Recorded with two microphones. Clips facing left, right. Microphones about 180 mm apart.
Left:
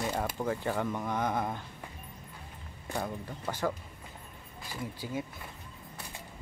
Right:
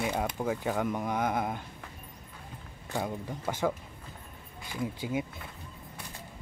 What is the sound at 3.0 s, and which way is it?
Speech, 15° right (ahead or behind).